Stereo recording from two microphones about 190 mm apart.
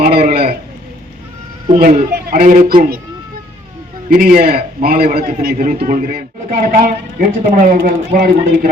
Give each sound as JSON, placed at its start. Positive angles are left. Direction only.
{"t": 0.0, "sound": "a sound", "side_deg": -55}
{"t": 2.0, "sound": "a man's voice", "side_deg": -50}
{"t": 4.1, "sound": "a man's voice", "side_deg": -50}